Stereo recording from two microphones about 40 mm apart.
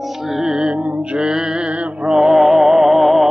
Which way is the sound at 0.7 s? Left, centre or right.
Right.